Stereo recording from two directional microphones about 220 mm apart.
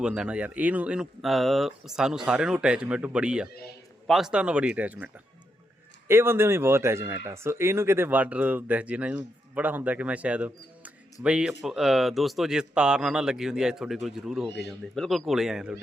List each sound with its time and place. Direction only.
0.0 s speech: 5° right (ahead or behind)